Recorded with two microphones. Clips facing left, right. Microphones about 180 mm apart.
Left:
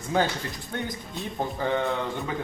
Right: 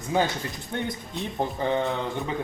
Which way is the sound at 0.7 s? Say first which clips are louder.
Right 3 dB; 25° right (ahead or behind).